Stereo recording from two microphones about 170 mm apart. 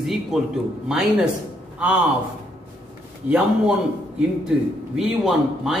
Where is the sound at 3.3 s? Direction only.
10° right (ahead or behind).